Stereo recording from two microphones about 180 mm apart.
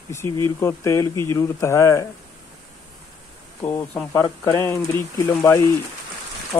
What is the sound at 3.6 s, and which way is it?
Speech, 15° left (ahead or behind).